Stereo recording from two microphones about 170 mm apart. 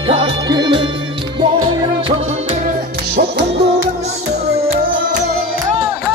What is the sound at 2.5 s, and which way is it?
Music, 50° right (ahead or behind).